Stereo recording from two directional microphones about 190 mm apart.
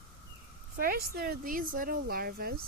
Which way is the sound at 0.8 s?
50° right (ahead or behind).